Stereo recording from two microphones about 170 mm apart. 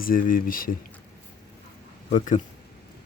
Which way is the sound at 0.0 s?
55° left (ahead or behind).